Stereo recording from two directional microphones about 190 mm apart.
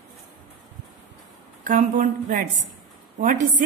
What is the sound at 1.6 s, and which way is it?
A woman's voice, 45° right (ahead or behind).